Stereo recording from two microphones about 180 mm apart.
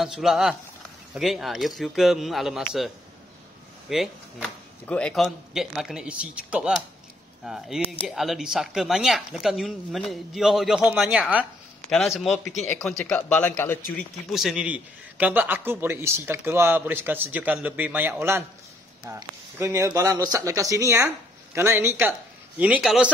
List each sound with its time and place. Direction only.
0.0 s speech: centre (ahead or behind)
3.9 s speech: 5° left (ahead or behind)
14.3 s a man's voice: centre (ahead or behind)